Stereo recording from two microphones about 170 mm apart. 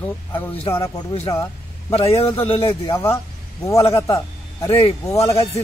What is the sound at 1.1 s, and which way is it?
A man's voice, 35° left (ahead or behind).